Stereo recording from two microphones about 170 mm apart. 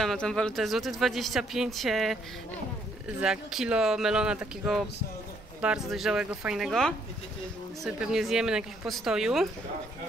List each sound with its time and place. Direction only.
0.0 s speech: centre (ahead or behind)
3.2 s speech: 5° right (ahead or behind)